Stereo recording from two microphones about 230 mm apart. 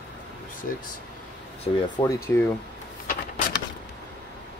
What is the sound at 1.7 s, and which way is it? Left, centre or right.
Speech, left.